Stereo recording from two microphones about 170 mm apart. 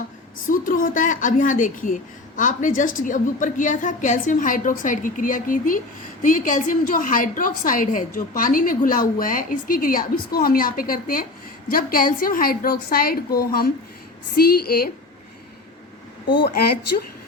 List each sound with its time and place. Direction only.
0.4 s a woman's voice: 55° left (ahead or behind)
16.4 s a woman's voice: 65° left (ahead or behind)